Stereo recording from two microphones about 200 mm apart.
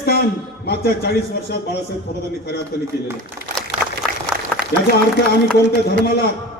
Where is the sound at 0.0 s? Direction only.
50° left (ahead or behind).